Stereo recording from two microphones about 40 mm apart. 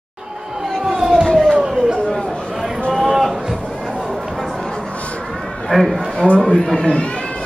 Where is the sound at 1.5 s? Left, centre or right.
Centre.